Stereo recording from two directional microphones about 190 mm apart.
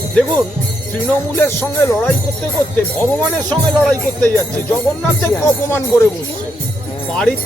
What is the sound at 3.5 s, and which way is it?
Speech, 10° left (ahead or behind).